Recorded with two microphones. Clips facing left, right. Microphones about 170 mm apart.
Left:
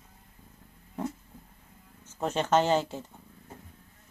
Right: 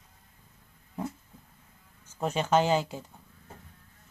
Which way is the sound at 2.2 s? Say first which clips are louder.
Even; 5° right (ahead or behind).